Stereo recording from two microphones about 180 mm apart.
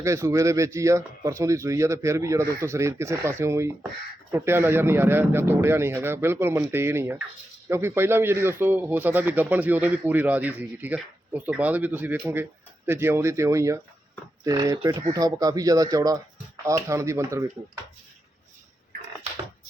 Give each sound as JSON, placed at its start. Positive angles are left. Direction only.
{"t": 0.0, "sound": "a man's voice", "side_deg": -15}